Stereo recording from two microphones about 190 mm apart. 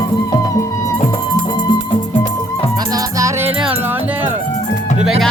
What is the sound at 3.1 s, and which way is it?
Music, 15° right (ahead or behind).